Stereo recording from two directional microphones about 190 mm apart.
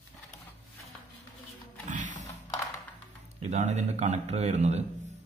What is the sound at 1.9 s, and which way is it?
Mechanisms, 40° right (ahead or behind).